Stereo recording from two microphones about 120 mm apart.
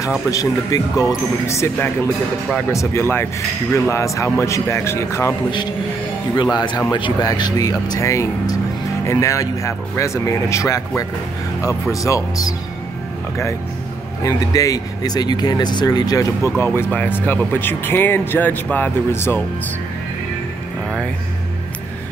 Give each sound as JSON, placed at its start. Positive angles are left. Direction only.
{"t": 0.3, "sound": "speech", "side_deg": 30}
{"t": 2.7, "sound": "speech", "side_deg": 25}
{"t": 6.5, "sound": "speech", "side_deg": 40}
{"t": 11.9, "sound": "speech", "side_deg": 25}
{"t": 14.2, "sound": "speech", "side_deg": 30}